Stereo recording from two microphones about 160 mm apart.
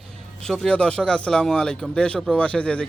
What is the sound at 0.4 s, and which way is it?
Speech, centre (ahead or behind).